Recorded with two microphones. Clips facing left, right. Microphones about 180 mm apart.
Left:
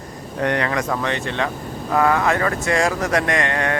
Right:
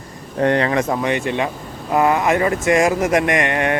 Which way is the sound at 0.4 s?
30° right (ahead or behind).